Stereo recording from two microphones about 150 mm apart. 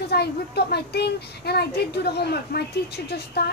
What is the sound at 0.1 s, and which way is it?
A child's voice, 90° left.